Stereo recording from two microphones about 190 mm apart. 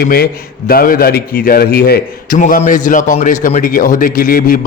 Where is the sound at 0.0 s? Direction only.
55° left (ahead or behind).